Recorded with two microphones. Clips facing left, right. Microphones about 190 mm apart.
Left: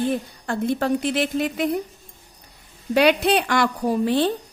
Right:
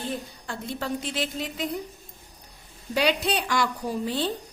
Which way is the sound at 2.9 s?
60° left (ahead or behind).